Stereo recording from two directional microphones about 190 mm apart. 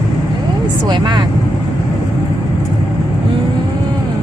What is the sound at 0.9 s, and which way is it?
Speech, 25° right (ahead or behind).